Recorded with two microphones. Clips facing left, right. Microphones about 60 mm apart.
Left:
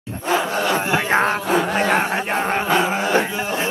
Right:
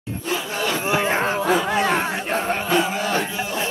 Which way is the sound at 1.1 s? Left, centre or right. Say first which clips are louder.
Left 2 dB; left.